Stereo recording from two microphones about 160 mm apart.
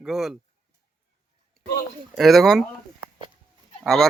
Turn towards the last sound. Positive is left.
turn(degrees=0)  # may be behind; listen again after turning